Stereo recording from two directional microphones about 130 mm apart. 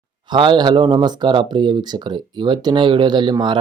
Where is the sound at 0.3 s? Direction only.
35° right (ahead or behind).